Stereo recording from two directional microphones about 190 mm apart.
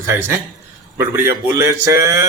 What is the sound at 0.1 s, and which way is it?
A man's voice, 15° right (ahead or behind).